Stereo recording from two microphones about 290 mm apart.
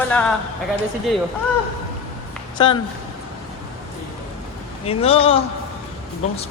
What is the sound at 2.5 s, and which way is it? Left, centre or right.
Speech, centre.